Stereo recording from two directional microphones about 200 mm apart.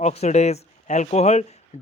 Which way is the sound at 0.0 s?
35° left (ahead or behind).